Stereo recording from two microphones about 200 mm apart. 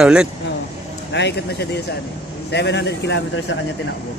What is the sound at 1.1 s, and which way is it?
Speech, 60° left (ahead or behind).